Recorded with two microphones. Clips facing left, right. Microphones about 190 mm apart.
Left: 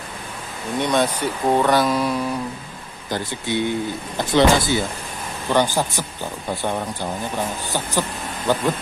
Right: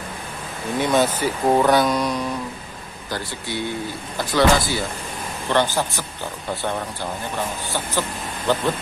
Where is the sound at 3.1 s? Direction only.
20° left (ahead or behind).